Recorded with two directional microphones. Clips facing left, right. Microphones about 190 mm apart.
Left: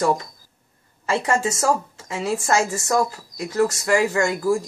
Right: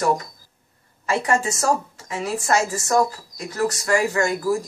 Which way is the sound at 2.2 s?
25° left (ahead or behind).